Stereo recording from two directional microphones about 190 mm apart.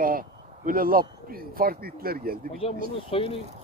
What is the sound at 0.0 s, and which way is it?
Speech, 50° right (ahead or behind).